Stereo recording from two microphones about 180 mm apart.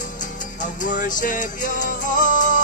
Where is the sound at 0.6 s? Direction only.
45° left (ahead or behind).